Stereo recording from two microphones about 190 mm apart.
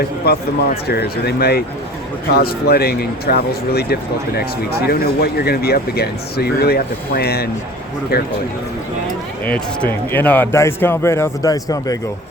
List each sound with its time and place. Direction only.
0.3 s speech: 55° left (ahead or behind)
9.4 s speech: 10° left (ahead or behind)